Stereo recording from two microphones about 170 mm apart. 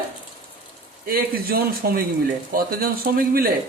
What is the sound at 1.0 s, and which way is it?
Speech, 60° right (ahead or behind).